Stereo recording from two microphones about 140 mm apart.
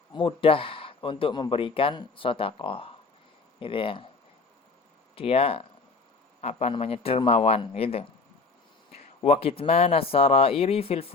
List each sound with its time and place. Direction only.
0.1 s speech: 40° left (ahead or behind)
5.1 s speech: 45° left (ahead or behind)